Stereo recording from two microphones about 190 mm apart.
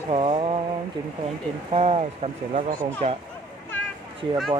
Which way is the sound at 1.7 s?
30° right (ahead or behind).